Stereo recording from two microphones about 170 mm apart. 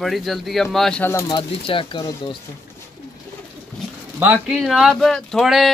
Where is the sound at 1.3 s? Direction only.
30° left (ahead or behind).